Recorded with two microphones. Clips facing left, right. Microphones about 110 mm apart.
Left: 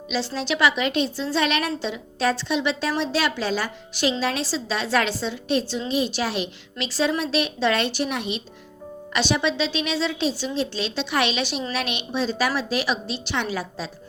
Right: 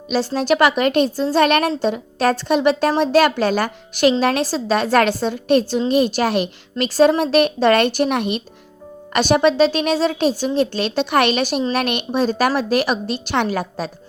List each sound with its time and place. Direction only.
0.1 s a woman's voice: 45° right (ahead or behind)